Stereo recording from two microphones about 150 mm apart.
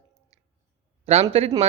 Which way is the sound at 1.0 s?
45° right (ahead or behind).